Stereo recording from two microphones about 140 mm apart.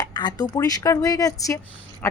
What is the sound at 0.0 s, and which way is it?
Speech, 30° left (ahead or behind).